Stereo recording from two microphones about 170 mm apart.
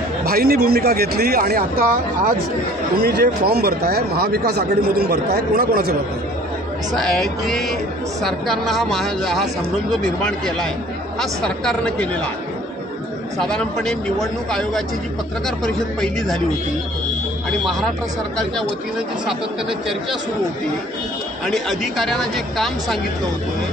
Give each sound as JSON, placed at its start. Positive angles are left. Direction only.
{"t": 0.2, "sound": "speech", "side_deg": -65}
{"t": 7.0, "sound": "speech", "side_deg": 0}
{"t": 13.4, "sound": "speech", "side_deg": 5}
{"t": 17.5, "sound": "speech", "side_deg": 0}
{"t": 21.5, "sound": "speech", "side_deg": 0}